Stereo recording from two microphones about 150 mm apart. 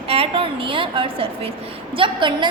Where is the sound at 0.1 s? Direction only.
40° right (ahead or behind).